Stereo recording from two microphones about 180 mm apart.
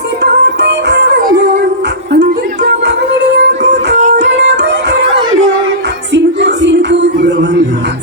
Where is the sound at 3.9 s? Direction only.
40° right (ahead or behind).